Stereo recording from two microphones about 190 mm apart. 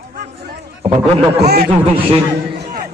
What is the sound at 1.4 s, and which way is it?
Speech, 55° right (ahead or behind).